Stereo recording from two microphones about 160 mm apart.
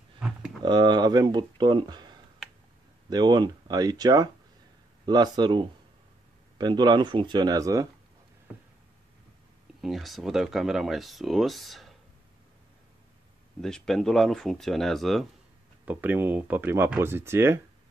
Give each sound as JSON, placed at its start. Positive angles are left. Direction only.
{"t": 0.6, "sound": "speech", "side_deg": -25}
{"t": 9.8, "sound": "speech", "side_deg": 0}
{"t": 13.6, "sound": "speech", "side_deg": 5}
{"t": 15.8, "sound": "speech", "side_deg": -10}